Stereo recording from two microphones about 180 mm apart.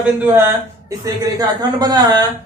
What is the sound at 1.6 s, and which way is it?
Speech, 20° right (ahead or behind).